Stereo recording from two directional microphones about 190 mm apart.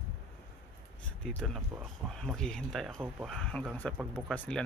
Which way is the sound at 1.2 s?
5° left (ahead or behind).